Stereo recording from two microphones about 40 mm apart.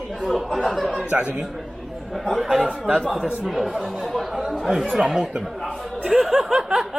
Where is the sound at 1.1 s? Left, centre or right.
Right.